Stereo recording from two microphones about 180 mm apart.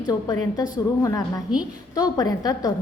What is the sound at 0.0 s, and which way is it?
A woman's voice, 20° left (ahead or behind).